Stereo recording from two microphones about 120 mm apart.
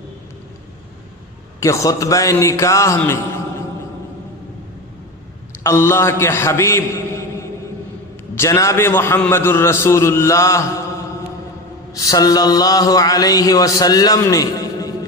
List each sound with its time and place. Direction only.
1.6 s a man's voice: 25° left (ahead or behind)
5.6 s a man's voice: 20° left (ahead or behind)
8.4 s a man's voice: 25° left (ahead or behind)
11.9 s a sound: 30° left (ahead or behind)